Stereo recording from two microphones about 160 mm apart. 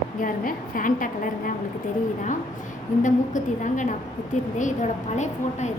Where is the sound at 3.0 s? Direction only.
50° left (ahead or behind).